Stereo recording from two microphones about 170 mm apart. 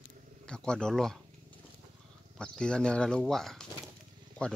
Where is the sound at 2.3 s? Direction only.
5° left (ahead or behind).